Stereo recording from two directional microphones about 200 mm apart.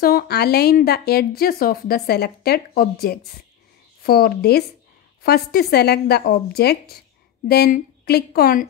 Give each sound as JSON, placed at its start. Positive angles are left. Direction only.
{"t": 0.0, "sound": "speech", "side_deg": 50}